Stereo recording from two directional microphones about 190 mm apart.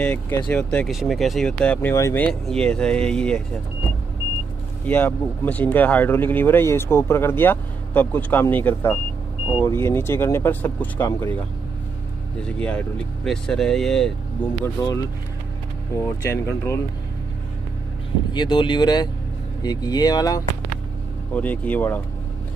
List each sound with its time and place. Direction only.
0.0 s speech: 10° left (ahead or behind)
4.8 s speech: 10° left (ahead or behind)
12.5 s speech: 5° left (ahead or behind)
14.6 s speech: 15° left (ahead or behind)
16.0 s speech: 15° left (ahead or behind)
18.3 s speech: 25° left (ahead or behind)
21.3 s speech: 10° left (ahead or behind)